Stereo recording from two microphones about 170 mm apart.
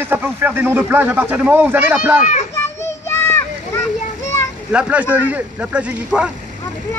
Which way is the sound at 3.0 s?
15° left (ahead or behind).